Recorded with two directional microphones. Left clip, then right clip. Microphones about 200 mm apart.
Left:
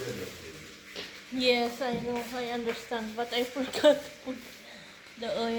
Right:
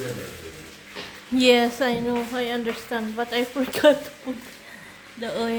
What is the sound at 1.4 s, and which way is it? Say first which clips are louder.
Speech: right 8 dB; 50° right (ahead or behind).